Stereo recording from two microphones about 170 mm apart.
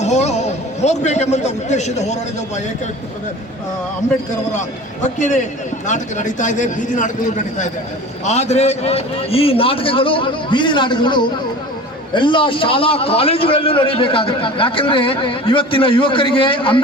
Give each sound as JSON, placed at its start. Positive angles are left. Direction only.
{"t": 0.0, "sound": "a man's voice", "side_deg": 40}
{"t": 5.0, "sound": "a man's voice", "side_deg": 45}
{"t": 8.2, "sound": "a man's voice", "side_deg": 40}